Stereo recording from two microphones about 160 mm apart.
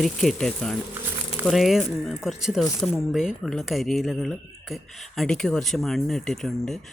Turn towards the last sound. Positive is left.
turn(degrees=5)  # may be behind; listen again after turning